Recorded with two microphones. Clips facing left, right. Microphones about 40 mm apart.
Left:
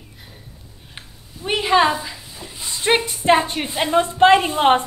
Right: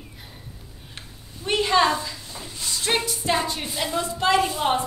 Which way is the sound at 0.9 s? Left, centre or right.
Centre.